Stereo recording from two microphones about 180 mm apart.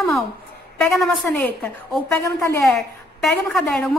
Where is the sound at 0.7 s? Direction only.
Centre (ahead or behind).